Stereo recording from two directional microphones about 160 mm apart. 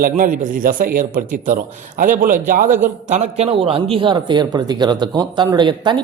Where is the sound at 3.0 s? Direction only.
45° right (ahead or behind).